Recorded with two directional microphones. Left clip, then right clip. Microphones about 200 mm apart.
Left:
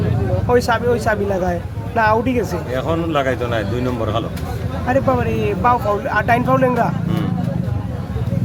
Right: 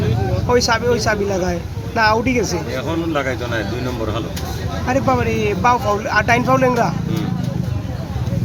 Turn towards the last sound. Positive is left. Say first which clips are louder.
# right 1 dB
turn(degrees=0)  # may be behind; listen again after turning